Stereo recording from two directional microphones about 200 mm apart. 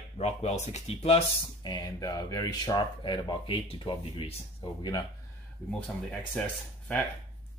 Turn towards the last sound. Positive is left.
turn(degrees=5)  # may be behind; listen again after turning